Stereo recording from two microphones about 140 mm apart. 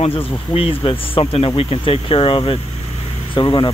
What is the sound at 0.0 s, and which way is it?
Speech, 45° left (ahead or behind).